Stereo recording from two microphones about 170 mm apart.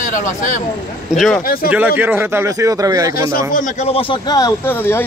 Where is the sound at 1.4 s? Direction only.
60° left (ahead or behind).